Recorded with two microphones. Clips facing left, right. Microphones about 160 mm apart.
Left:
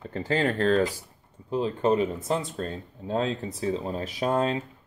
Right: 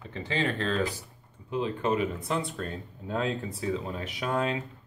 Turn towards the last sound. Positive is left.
turn(degrees=35)  # may be behind; listen again after turning